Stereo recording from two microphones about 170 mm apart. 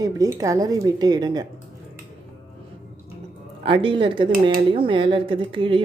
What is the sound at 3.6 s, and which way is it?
Speech, 30° right (ahead or behind).